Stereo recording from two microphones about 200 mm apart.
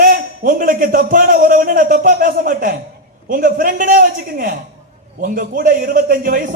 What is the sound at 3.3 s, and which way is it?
A man's voice, 45° right (ahead or behind).